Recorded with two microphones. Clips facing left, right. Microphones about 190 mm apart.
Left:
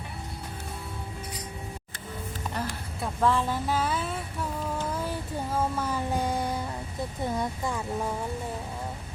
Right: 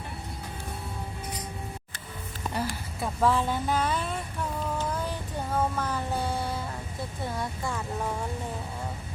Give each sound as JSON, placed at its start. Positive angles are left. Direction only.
{"t": 2.6, "sound": "a sound", "side_deg": -5}
{"t": 5.5, "sound": "music", "side_deg": 10}
{"t": 7.3, "sound": "speech", "side_deg": 20}